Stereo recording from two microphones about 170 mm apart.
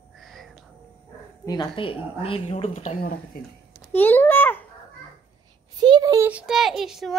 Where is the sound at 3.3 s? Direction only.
60° left (ahead or behind).